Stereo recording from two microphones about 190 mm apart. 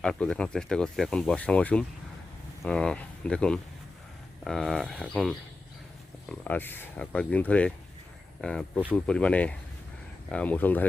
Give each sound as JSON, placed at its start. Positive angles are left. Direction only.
{"t": 0.0, "sound": "speech", "side_deg": 5}